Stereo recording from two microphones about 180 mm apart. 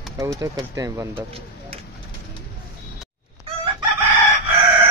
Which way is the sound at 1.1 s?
35° right (ahead or behind).